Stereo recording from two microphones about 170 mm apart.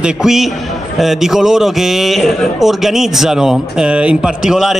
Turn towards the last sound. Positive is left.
turn(degrees=-5)  # may be behind; listen again after turning